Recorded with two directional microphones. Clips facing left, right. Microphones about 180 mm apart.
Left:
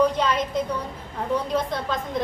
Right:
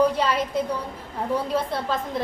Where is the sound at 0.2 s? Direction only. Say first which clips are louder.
Even; 10° right (ahead or behind).